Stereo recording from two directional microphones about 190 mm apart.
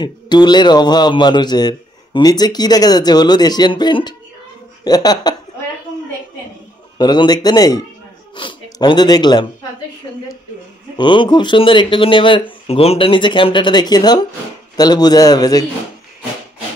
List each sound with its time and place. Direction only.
0.0 s a man's voice: 20° left (ahead or behind)
7.0 s a man's voice: 20° left (ahead or behind)
11.0 s a man's voice: 25° left (ahead or behind)